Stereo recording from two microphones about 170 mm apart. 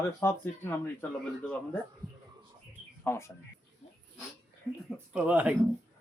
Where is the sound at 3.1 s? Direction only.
15° left (ahead or behind).